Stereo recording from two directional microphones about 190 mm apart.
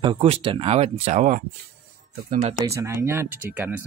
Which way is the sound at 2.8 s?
15° right (ahead or behind).